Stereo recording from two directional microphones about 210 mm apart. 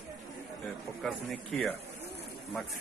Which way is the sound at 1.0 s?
Centre (ahead or behind).